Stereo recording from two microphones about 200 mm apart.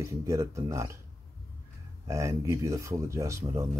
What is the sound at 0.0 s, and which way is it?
Speech, 15° right (ahead or behind).